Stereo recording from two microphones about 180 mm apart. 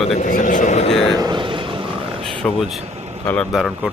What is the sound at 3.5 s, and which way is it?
Speech, centre (ahead or behind).